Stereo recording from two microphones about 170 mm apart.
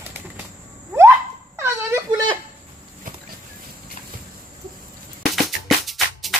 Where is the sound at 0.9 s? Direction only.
15° right (ahead or behind).